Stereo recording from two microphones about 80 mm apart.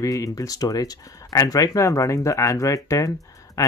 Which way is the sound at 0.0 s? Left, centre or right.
Left.